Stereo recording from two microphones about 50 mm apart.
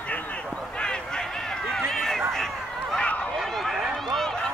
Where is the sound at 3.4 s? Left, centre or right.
Centre.